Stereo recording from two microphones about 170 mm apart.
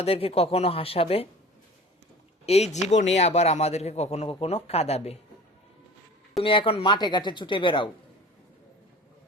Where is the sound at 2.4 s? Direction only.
40° left (ahead or behind).